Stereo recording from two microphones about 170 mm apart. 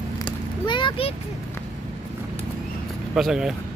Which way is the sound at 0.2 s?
30° left (ahead or behind).